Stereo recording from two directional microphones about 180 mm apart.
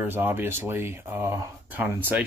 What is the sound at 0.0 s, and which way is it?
Speech, 10° right (ahead or behind).